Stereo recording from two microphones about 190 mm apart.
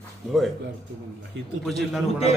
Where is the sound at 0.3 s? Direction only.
Centre (ahead or behind).